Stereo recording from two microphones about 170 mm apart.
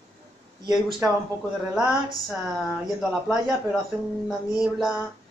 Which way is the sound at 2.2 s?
Centre (ahead or behind).